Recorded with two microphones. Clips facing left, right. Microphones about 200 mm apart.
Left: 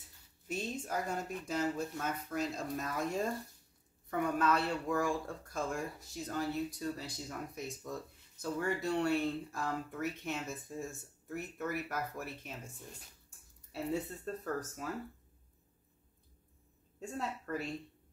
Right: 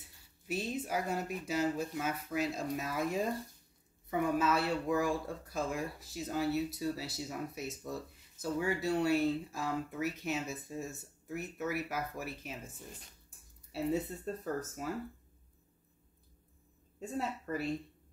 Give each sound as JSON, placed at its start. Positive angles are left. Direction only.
{"t": 0.5, "sound": "speech", "side_deg": -5}
{"t": 13.7, "sound": "speech", "side_deg": -5}
{"t": 17.2, "sound": "speech", "side_deg": -5}